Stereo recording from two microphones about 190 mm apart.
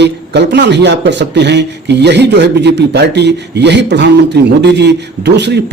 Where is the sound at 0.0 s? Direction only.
65° right (ahead or behind).